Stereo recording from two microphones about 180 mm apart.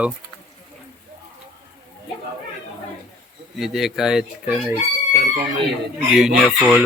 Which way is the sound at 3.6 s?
Centre (ahead or behind).